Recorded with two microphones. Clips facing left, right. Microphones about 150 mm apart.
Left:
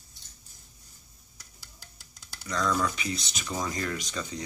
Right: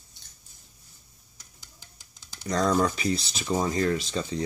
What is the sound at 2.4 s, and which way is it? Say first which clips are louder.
Speech: right 5 dB; 35° right (ahead or behind).